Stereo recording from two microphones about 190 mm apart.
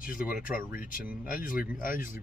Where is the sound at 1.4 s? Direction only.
45° left (ahead or behind).